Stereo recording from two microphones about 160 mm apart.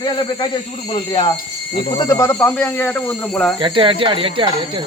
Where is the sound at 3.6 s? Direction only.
35° right (ahead or behind).